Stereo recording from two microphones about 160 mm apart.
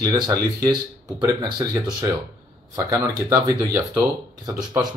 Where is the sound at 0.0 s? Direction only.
20° right (ahead or behind).